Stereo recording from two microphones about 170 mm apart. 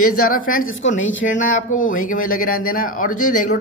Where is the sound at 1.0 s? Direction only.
90° left.